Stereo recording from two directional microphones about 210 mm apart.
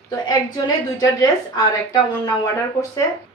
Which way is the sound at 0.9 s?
20° left (ahead or behind).